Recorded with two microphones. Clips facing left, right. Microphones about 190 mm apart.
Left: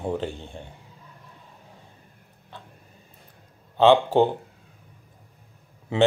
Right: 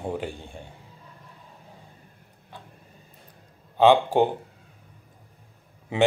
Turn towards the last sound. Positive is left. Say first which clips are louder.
# left 2 dB
turn(degrees=-15)  # may be behind; listen again after turning